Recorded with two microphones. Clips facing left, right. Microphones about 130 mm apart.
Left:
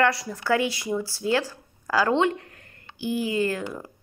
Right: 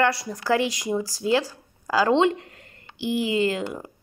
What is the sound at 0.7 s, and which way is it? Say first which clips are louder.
Speech: right 2 dB; 15° right (ahead or behind).